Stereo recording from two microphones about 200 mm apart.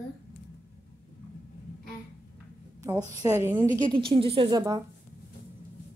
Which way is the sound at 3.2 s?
15° right (ahead or behind).